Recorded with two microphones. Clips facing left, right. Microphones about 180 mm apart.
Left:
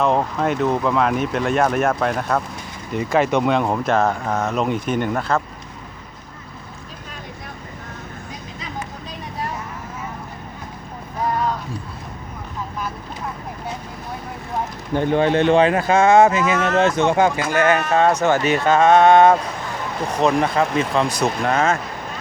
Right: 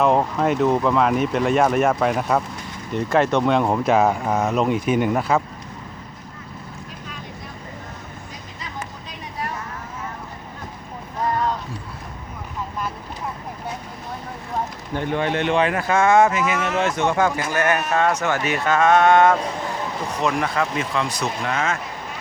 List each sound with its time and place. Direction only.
0.0 s speech: centre (ahead or behind)
14.9 s speech: 35° left (ahead or behind)
16.6 s speech: 5° right (ahead or behind)
17.0 s speech: 25° left (ahead or behind)
21.4 s speech: 40° left (ahead or behind)